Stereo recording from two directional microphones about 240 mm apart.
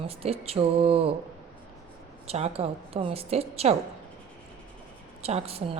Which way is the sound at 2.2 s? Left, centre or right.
Right.